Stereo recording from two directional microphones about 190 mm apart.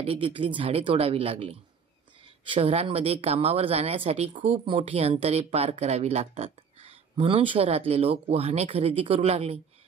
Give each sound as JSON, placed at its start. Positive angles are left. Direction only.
{"t": 0.0, "sound": "a woman's voice", "side_deg": -30}